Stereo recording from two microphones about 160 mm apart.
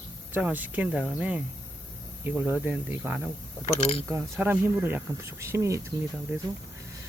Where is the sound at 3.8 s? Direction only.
35° left (ahead or behind).